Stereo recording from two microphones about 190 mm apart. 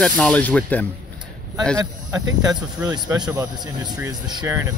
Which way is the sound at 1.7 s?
15° right (ahead or behind).